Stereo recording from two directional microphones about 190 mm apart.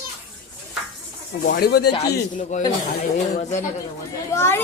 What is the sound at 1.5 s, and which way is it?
Speech, 55° left (ahead or behind).